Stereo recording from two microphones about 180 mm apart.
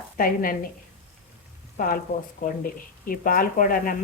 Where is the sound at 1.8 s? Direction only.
50° left (ahead or behind).